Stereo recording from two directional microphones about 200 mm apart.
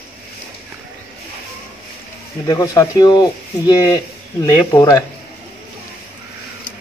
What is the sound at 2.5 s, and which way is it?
Speech, 15° left (ahead or behind).